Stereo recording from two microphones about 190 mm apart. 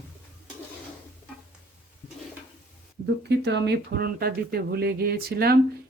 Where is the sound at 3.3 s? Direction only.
65° right (ahead or behind).